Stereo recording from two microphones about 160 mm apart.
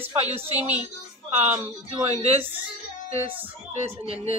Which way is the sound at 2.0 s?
40° right (ahead or behind).